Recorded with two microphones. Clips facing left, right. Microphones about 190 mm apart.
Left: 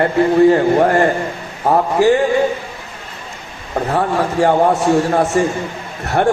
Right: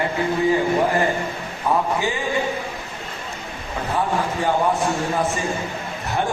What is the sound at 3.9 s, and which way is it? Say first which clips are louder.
A man's voice: left 6 dB; 70° left (ahead or behind).